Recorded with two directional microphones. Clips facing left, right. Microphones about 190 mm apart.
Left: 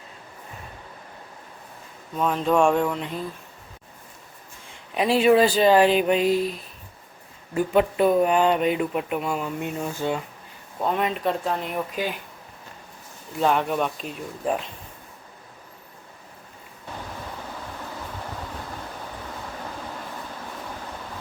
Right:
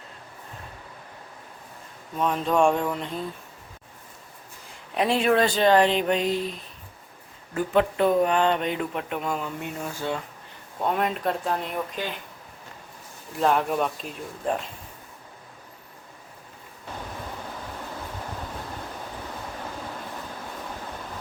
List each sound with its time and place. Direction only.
2.1 s speech: centre (ahead or behind)
4.7 s speech: centre (ahead or behind)
7.5 s speech: 15° left (ahead or behind)
9.6 s speech: 20° left (ahead or behind)
10.8 s speech: centre (ahead or behind)
13.4 s speech: centre (ahead or behind)